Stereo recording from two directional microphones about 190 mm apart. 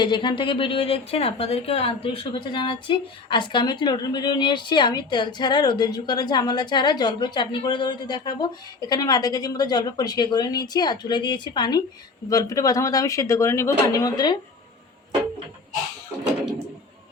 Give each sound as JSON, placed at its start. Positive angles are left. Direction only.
{"t": 0.0, "sound": "speech", "side_deg": 25}